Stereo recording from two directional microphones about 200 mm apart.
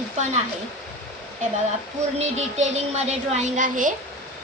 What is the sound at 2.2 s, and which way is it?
A woman's voice, 35° right (ahead or behind).